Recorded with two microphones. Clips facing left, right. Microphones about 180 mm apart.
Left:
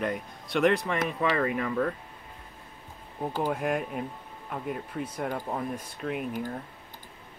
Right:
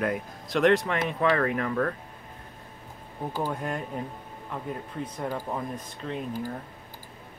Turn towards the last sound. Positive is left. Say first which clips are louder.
# left 1 dB
turn(degrees=10)  # may be behind; listen again after turning